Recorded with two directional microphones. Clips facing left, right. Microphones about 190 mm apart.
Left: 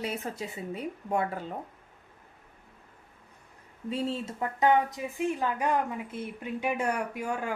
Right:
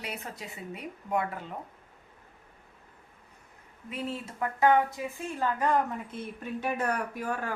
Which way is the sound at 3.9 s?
30° left (ahead or behind).